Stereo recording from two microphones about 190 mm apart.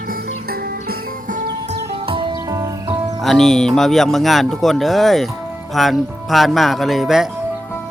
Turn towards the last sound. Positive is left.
turn(degrees=0)  # may be behind; listen again after turning